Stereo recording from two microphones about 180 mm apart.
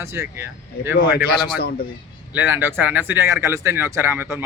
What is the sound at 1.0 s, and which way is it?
Speech, 60° left (ahead or behind).